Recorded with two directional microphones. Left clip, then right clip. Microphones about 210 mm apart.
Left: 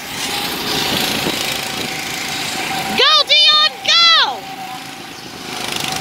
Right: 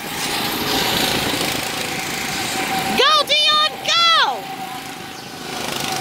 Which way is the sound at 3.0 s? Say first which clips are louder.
Left 4 dB; 5° right (ahead or behind).